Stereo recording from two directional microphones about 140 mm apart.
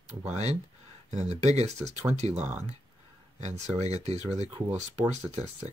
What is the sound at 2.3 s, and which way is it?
Speech, 10° right (ahead or behind).